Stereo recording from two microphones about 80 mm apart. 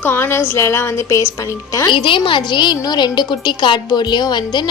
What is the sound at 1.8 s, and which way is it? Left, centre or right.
Speech, left.